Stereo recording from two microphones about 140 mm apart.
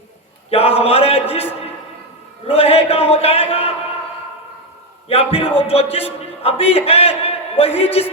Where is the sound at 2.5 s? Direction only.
45° left (ahead or behind).